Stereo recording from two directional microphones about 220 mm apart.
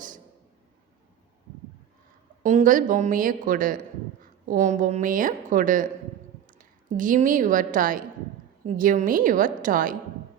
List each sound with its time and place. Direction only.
2.4 s a woman's voice: 35° right (ahead or behind)